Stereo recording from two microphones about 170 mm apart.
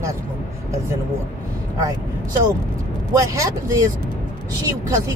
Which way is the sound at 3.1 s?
20° right (ahead or behind).